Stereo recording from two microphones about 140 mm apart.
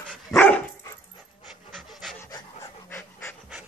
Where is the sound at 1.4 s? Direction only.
Centre (ahead or behind).